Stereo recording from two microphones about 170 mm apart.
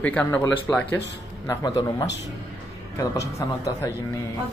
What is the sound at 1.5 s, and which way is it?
Speech, 20° left (ahead or behind).